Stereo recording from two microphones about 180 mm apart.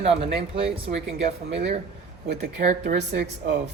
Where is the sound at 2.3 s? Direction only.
45° right (ahead or behind).